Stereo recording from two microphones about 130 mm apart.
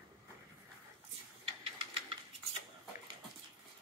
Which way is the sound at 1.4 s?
45° right (ahead or behind).